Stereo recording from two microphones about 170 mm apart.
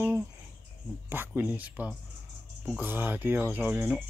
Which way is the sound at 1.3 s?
10° right (ahead or behind).